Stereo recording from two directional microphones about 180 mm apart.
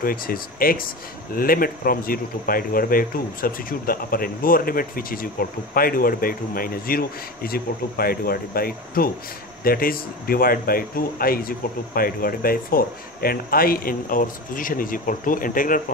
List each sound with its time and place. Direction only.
0.0 s speech: 55° left (ahead or behind)